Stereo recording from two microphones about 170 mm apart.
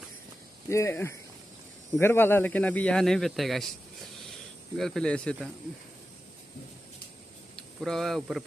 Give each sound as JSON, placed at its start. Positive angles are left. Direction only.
{"t": 0.7, "sound": "speech", "side_deg": 15}
{"t": 4.7, "sound": "speech", "side_deg": 0}
{"t": 7.5, "sound": "speech", "side_deg": 5}